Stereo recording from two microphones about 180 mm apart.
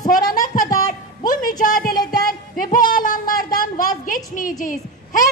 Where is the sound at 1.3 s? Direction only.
50° left (ahead or behind).